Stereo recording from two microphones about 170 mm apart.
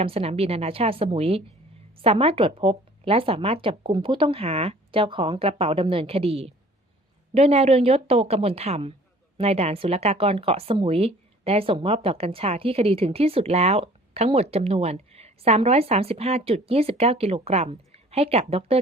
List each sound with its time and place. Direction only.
0.0 s speech: 35° right (ahead or behind)